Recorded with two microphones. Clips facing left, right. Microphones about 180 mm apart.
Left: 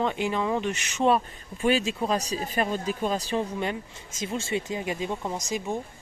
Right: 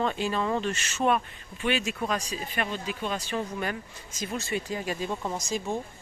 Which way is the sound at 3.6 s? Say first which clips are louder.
Left 2 dB; 25° left (ahead or behind).